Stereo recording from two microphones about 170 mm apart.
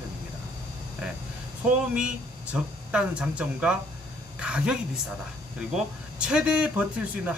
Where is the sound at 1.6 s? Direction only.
5° right (ahead or behind).